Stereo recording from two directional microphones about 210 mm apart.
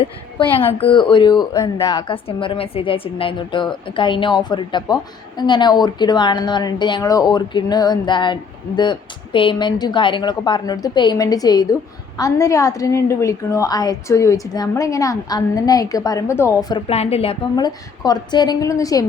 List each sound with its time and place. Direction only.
0.0 s speech: 25° left (ahead or behind)